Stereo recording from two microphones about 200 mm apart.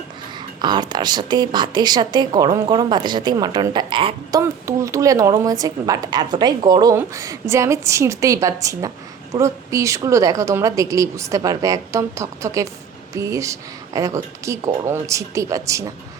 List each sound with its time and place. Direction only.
0.3 s a woman's voice: 20° right (ahead or behind)